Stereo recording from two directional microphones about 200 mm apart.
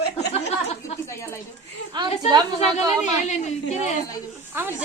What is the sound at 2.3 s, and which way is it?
Speech, 20° right (ahead or behind).